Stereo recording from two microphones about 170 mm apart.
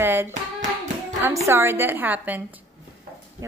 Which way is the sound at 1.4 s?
15° right (ahead or behind).